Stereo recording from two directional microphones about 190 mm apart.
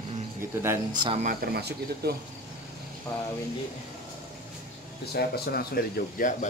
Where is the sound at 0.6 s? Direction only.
15° right (ahead or behind).